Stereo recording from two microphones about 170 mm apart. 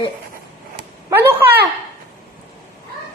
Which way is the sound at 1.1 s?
10° right (ahead or behind).